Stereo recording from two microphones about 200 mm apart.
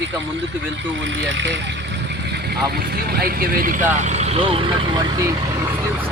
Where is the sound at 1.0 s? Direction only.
65° right (ahead or behind).